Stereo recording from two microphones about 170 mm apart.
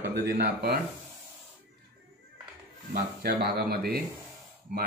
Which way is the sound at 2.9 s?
60° right (ahead or behind).